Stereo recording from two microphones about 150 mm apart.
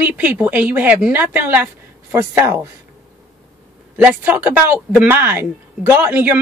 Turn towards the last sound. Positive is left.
turn(degrees=-15)  # may be behind; listen again after turning